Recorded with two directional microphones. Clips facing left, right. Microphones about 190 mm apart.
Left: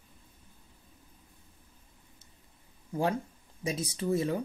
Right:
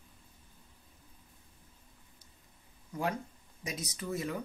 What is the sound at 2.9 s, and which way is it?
Speech, 30° left (ahead or behind).